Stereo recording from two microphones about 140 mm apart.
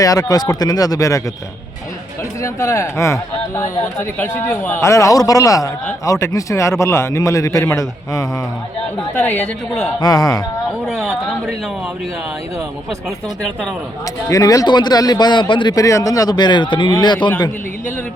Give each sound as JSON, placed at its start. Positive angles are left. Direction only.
{"t": 0.0, "sound": "speech", "side_deg": 25}
{"t": 2.4, "sound": "speech", "side_deg": 20}
{"t": 9.1, "sound": "a woman's voice", "side_deg": 10}
{"t": 10.0, "sound": "speech", "side_deg": 25}
{"t": 10.8, "sound": "speech", "side_deg": 0}
{"t": 14.3, "sound": "speech", "side_deg": 25}